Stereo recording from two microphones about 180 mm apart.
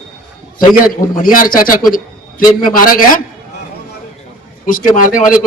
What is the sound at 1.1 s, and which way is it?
A man's voice, 50° left (ahead or behind).